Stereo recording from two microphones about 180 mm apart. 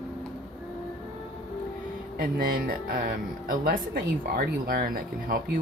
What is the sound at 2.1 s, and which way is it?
Speech, 55° right (ahead or behind).